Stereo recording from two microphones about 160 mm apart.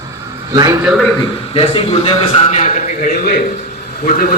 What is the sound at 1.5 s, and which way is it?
A man's voice, 35° left (ahead or behind).